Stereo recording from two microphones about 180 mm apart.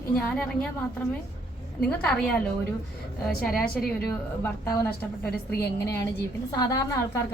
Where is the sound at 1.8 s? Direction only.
5° left (ahead or behind).